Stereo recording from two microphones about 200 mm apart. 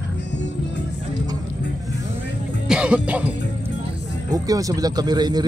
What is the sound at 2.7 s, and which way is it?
Music, 5° right (ahead or behind).